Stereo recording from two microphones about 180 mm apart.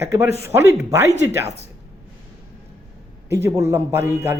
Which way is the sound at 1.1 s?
35° right (ahead or behind).